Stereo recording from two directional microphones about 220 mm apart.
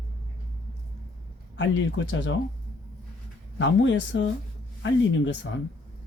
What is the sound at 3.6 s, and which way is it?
Speech, 55° left (ahead or behind).